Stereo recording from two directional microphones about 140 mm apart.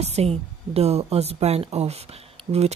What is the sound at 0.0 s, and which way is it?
Speech, 50° right (ahead or behind).